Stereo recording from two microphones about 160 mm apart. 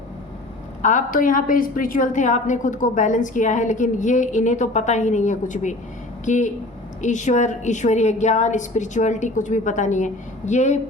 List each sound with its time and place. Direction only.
0.8 s a woman's voice: 50° left (ahead or behind)